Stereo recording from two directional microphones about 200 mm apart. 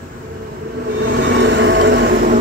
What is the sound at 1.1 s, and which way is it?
Vehicle, 60° right (ahead or behind).